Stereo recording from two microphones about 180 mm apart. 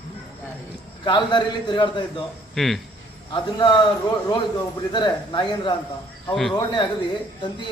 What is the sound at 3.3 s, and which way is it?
Speech, 25° left (ahead or behind).